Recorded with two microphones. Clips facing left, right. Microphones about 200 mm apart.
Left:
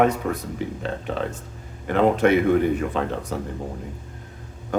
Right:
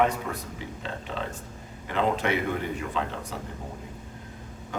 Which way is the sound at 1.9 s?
55° left (ahead or behind).